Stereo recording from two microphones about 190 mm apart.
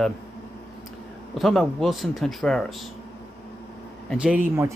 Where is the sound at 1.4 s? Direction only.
Centre (ahead or behind).